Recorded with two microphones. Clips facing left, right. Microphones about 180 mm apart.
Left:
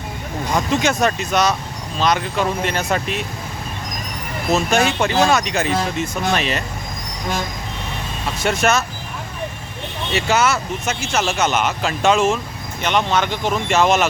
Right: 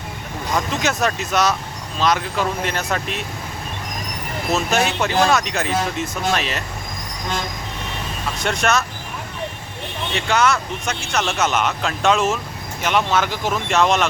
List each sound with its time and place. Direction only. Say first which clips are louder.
0.5 s speech: left 3 dB; centre (ahead or behind)
4.5 s speech: left 3 dB; centre (ahead or behind)
8.4 s speech: left 2 dB; 5° left (ahead or behind)
10.2 s speech: left 1 dB; 5° left (ahead or behind)